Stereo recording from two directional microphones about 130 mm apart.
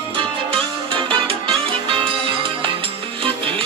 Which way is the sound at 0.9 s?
45° right (ahead or behind).